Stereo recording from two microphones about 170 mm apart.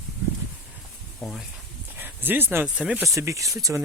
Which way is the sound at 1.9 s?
10° right (ahead or behind).